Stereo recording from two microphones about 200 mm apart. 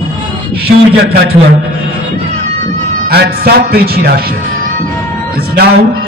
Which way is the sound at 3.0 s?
50° right (ahead or behind).